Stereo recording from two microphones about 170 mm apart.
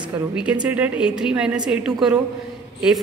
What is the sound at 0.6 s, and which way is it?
A woman's voice, 10° right (ahead or behind).